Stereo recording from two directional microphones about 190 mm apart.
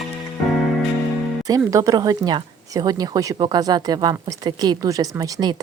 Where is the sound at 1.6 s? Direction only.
15° right (ahead or behind).